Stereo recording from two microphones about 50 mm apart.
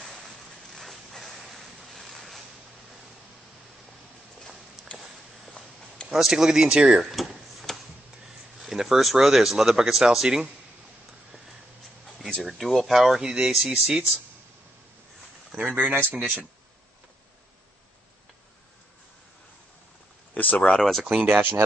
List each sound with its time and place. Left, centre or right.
0.7 s a sound: centre
4.9 s a sound: left
6.0 s speech: centre
7.0 s a sound: centre
8.6 s speech: centre
12.3 s speech: centre
13.2 s speech: centre
15.7 s speech: right
20.3 s speech: left
21.2 s speech: right